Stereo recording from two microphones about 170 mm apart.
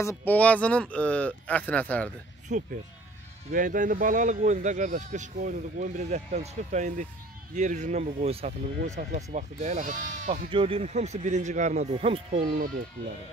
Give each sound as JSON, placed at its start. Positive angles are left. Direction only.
{"t": 0.0, "sound": "speech", "side_deg": 15}
{"t": 2.5, "sound": "speech", "side_deg": -50}
{"t": 10.5, "sound": "a man's voice", "side_deg": -30}